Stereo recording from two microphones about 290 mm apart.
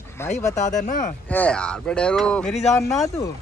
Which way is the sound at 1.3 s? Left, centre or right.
Centre.